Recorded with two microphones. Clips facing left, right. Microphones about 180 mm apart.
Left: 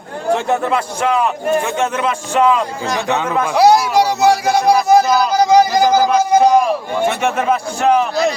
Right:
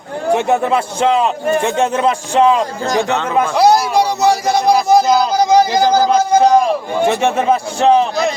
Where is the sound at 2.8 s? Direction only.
40° right (ahead or behind).